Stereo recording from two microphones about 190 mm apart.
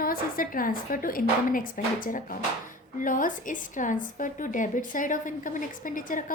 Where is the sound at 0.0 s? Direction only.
50° left (ahead or behind).